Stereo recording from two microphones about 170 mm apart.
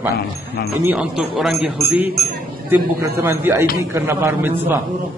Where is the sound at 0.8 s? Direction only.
5° right (ahead or behind).